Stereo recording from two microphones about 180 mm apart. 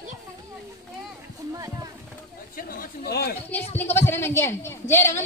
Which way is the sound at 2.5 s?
55° left (ahead or behind).